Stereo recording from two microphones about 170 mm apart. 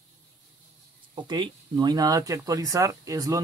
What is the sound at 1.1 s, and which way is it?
Speech, 25° right (ahead or behind).